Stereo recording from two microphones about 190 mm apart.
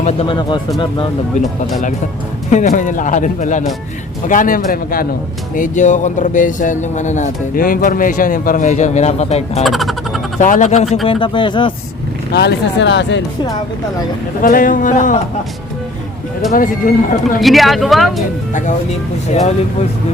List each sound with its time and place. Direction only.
0.0 s speech: 30° left (ahead or behind)
2.5 s speech: 40° left (ahead or behind)
9.6 s music: centre (ahead or behind)
10.3 s speech: 40° left (ahead or behind)
11.0 s speech: 25° left (ahead or behind)
12.3 s speech: 60° left (ahead or behind)
14.4 s speech: 45° left (ahead or behind)
16.5 s speech: 45° left (ahead or behind)
17.4 s speech: centre (ahead or behind)
19.3 s speech: 35° left (ahead or behind)